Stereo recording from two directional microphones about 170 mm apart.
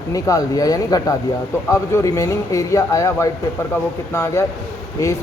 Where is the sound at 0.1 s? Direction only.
20° left (ahead or behind).